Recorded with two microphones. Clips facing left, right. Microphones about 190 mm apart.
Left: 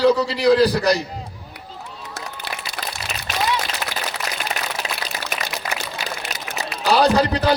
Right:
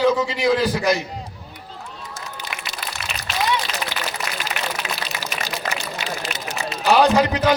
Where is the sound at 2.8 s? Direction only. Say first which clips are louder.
Even; 35° left (ahead or behind).